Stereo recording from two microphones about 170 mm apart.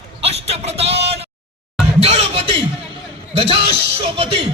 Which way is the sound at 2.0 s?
35° right (ahead or behind).